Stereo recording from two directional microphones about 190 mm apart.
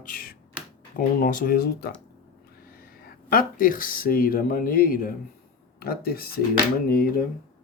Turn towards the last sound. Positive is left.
turn(degrees=50)  # may be behind; listen again after turning